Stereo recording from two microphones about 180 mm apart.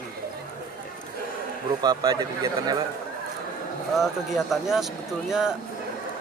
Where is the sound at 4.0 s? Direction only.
Centre (ahead or behind).